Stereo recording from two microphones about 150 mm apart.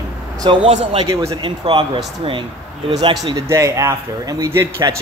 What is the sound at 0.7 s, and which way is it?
Speech, 45° right (ahead or behind).